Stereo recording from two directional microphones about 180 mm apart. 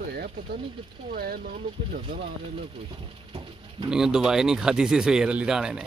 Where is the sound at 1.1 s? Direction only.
55° right (ahead or behind).